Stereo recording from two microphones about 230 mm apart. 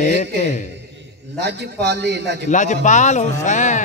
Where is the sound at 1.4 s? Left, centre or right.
Right.